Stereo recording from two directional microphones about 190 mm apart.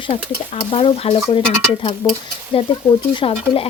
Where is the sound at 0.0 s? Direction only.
30° left (ahead or behind).